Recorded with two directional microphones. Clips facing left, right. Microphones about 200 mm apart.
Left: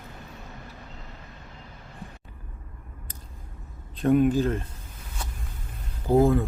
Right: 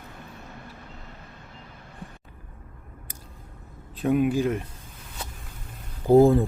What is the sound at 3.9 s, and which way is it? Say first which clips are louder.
Speech: left 2 dB; 5° right (ahead or behind).